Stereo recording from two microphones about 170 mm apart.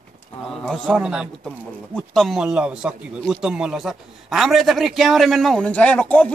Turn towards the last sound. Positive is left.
turn(degrees=5)  # may be behind; listen again after turning